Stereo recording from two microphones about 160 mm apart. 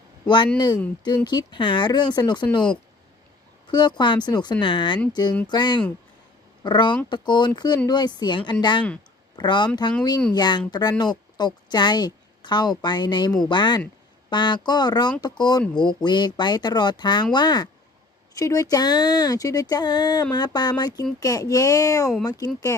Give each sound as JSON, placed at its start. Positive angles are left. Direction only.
{"t": 0.3, "sound": "speech", "side_deg": 30}
{"t": 3.7, "sound": "a woman's voice", "side_deg": 30}